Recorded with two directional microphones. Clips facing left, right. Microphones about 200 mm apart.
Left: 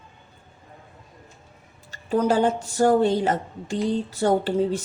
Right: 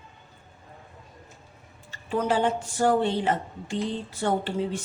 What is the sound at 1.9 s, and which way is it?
Speech, 40° left (ahead or behind).